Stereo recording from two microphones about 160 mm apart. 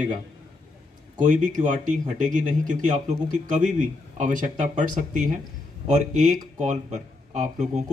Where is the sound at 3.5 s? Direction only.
45° right (ahead or behind).